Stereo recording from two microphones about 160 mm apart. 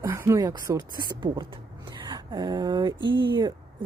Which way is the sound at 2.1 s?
25° right (ahead or behind).